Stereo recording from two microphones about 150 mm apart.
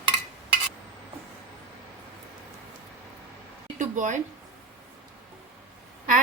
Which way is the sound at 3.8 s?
55° right (ahead or behind).